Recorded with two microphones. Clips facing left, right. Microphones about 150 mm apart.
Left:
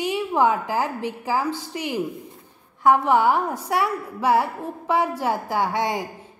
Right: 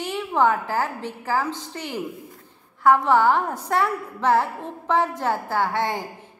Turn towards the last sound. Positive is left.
turn(degrees=15)  # may be behind; listen again after turning